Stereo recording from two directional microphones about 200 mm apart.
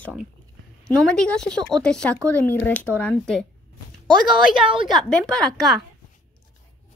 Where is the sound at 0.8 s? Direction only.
5° left (ahead or behind).